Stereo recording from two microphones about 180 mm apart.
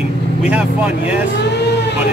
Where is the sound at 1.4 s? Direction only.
70° left (ahead or behind).